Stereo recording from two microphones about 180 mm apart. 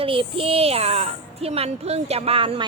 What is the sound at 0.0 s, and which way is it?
A woman's voice, 30° right (ahead or behind).